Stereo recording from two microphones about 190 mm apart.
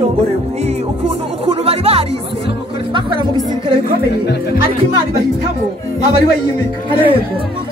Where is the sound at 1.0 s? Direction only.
30° right (ahead or behind).